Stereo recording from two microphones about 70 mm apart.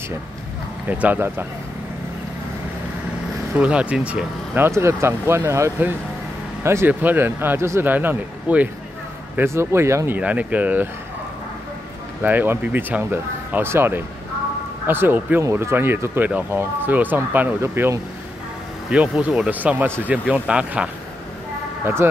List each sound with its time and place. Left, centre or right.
0.8 s speech: right
3.5 s speech: centre
4.6 s speech: right
6.9 s speech: right
7.8 s speech: right
9.4 s speech: right
10.1 s speech: right
12.2 s speech: right
18.9 s speech: centre
21.8 s speech: right